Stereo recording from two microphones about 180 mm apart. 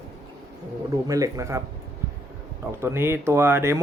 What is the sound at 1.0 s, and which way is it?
Speech, 20° right (ahead or behind).